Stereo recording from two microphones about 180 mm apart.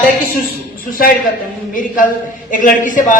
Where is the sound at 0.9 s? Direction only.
50° left (ahead or behind).